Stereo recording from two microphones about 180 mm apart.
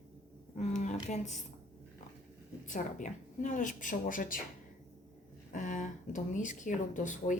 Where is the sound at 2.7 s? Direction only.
45° left (ahead or behind).